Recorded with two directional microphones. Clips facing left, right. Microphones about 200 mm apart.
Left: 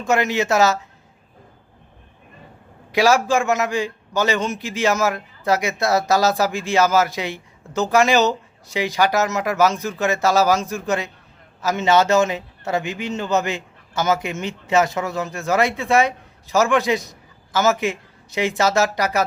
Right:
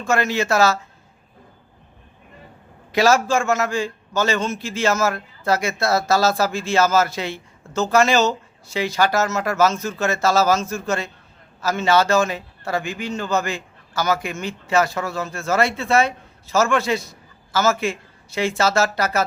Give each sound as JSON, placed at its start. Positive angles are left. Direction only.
{"t": 0.0, "sound": "a man's voice", "side_deg": 20}
{"t": 2.9, "sound": "a man's voice", "side_deg": 15}